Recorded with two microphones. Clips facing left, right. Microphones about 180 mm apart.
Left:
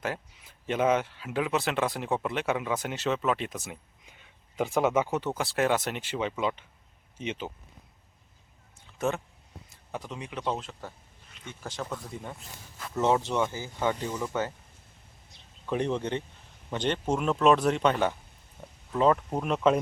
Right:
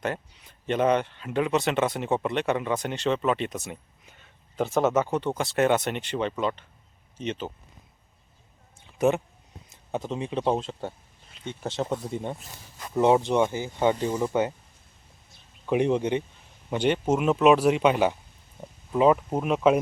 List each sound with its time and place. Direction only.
0.0 s speech: 5° left (ahead or behind)
4.0 s a sound: 10° left (ahead or behind)
4.9 s speech: 10° left (ahead or behind)
9.0 s speech: 15° right (ahead or behind)
15.6 s speech: 15° right (ahead or behind)